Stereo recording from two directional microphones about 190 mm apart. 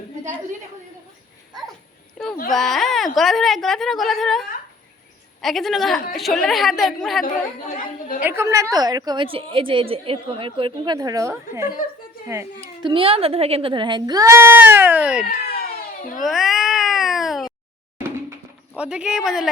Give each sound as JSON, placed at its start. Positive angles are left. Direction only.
{"t": 2.2, "sound": "a sound", "side_deg": 0}
{"t": 2.5, "sound": "a woman's voice", "side_deg": 0}
{"t": 8.2, "sound": "a woman's voice", "side_deg": -15}
{"t": 12.9, "sound": "a woman's voice", "side_deg": -30}
{"t": 15.2, "sound": "cat", "side_deg": 50}
{"t": 16.2, "sound": "cat", "side_deg": 0}
{"t": 18.8, "sound": "a woman's voice", "side_deg": -5}